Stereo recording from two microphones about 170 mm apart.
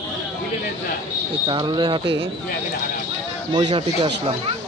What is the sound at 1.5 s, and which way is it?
Speech, 25° right (ahead or behind).